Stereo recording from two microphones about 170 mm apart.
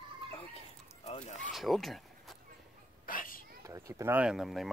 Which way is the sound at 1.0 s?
40° left (ahead or behind).